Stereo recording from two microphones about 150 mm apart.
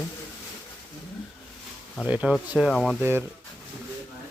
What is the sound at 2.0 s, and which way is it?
Speech, 10° right (ahead or behind).